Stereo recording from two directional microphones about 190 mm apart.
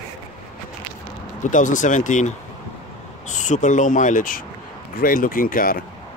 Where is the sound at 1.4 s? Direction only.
40° left (ahead or behind).